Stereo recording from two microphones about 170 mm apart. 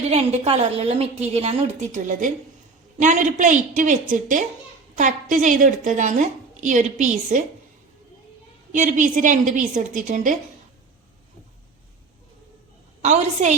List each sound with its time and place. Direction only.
0.1 s a woman's voice: 35° right (ahead or behind)
8.7 s a woman's voice: 50° right (ahead or behind)
13.0 s a woman's voice: 40° right (ahead or behind)